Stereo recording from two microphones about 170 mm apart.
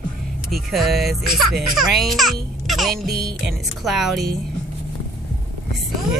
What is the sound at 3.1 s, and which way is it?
Music, 70° right (ahead or behind).